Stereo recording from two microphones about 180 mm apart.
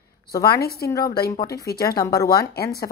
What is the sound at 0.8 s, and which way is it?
A woman's voice, 15° left (ahead or behind).